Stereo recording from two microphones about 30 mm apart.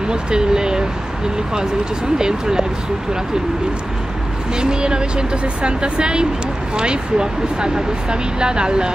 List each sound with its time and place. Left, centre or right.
0.1 s speech: right
2.1 s speech: right
4.6 s speech: right